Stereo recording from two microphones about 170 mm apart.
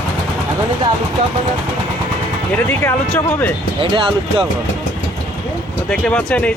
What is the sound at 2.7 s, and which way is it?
Speech, 15° left (ahead or behind).